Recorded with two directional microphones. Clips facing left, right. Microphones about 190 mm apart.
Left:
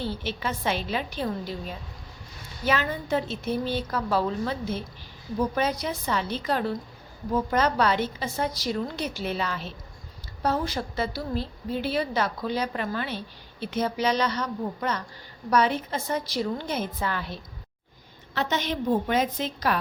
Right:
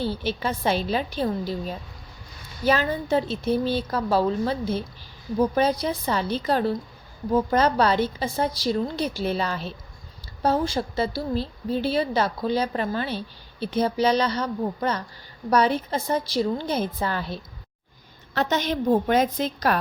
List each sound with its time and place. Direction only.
0.0 s a woman's voice: 35° right (ahead or behind)